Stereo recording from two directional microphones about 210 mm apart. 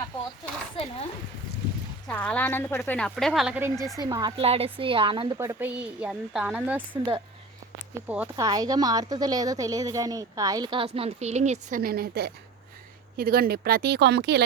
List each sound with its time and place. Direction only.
2.0 s a woman's voice: 5° left (ahead or behind)
8.0 s a woman's voice: 10° right (ahead or behind)
8.4 s a woman's voice: 20° right (ahead or behind); by 14.4 s 50° right (ahead or behind)